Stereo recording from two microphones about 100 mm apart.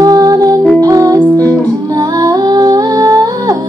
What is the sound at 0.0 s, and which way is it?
Music, 40° right (ahead or behind).